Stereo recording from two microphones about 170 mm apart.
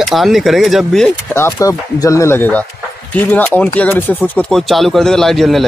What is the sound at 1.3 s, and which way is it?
Speech, 15° left (ahead or behind).